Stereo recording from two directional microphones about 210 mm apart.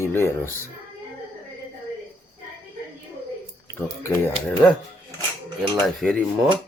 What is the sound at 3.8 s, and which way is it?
Speech, 10° left (ahead or behind).